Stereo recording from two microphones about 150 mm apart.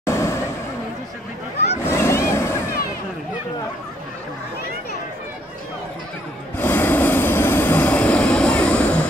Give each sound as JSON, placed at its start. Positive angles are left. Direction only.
{"t": 0.0, "sound": "vehicle", "side_deg": 20}
{"t": 1.9, "sound": "vehicle", "side_deg": 20}
{"t": 6.6, "sound": "train", "side_deg": 15}